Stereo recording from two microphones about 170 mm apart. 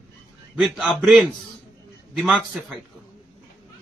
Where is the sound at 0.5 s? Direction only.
Centre (ahead or behind).